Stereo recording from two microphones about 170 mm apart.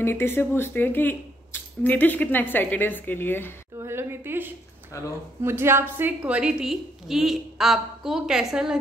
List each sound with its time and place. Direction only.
0.0 s speech: 15° left (ahead or behind)
3.8 s a sound: 15° right (ahead or behind)
4.9 s speech: 20° left (ahead or behind)
5.4 s a woman's voice: 15° right (ahead or behind)